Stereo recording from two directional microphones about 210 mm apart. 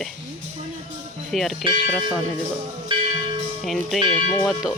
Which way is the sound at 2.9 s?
20° right (ahead or behind).